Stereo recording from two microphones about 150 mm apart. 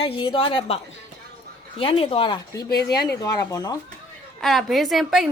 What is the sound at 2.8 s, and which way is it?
Speech, 90° left.